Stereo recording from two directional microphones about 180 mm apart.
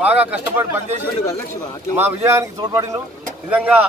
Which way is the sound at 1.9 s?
10° right (ahead or behind).